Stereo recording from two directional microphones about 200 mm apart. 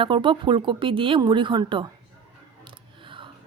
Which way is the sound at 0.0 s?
25° right (ahead or behind).